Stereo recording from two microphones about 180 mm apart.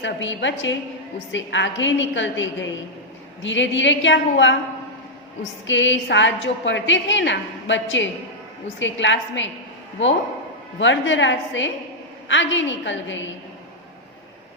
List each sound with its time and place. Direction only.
0.0 s a woman's voice: 90° left
10.8 s a woman's voice: 90° left